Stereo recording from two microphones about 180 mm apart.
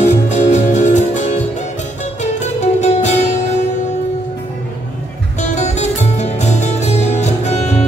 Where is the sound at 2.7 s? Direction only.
40° left (ahead or behind).